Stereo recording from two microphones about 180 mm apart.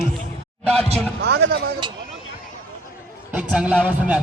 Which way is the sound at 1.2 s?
70° right (ahead or behind).